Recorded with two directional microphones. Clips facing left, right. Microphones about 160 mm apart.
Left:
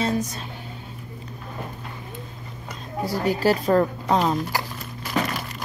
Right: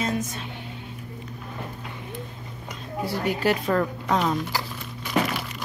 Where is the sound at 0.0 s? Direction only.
35° left (ahead or behind).